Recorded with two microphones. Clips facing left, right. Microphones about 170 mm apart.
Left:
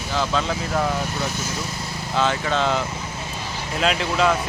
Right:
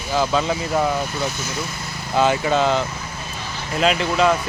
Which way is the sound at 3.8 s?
Centre (ahead or behind).